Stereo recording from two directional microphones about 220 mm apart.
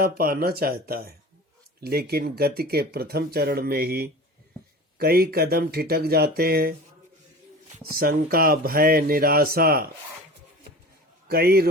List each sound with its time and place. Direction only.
0.0 s speech: 45° right (ahead or behind)
7.9 s speech: 40° right (ahead or behind)
11.3 s speech: 45° right (ahead or behind)